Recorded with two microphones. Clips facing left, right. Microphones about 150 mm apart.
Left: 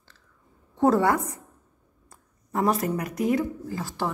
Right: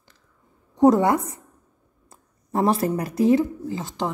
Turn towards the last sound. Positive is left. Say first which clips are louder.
# right 2 dB
turn(degrees=-20)  # may be behind; listen again after turning